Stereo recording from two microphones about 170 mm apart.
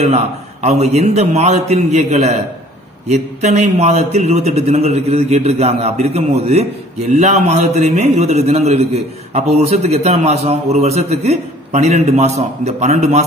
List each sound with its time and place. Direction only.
0.0 s a man's voice: 40° right (ahead or behind)